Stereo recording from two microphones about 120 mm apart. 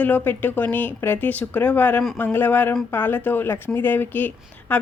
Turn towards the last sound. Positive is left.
turn(degrees=15)  # may be behind; listen again after turning